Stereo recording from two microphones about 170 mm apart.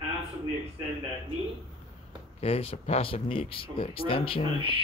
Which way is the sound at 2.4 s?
35° left (ahead or behind).